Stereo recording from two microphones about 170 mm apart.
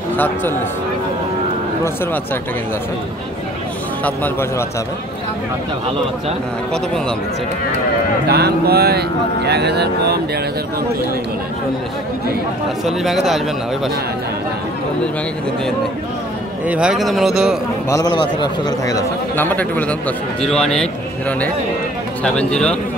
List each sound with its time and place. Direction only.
0.2 s a man's voice: 10° left (ahead or behind)
4.0 s a man's voice: 10° left (ahead or behind)
8.3 s speech: 70° right (ahead or behind)
12.8 s a man's voice: centre (ahead or behind)
16.6 s a man's voice: 5° right (ahead or behind)
17.8 s a man's voice: 20° left (ahead or behind)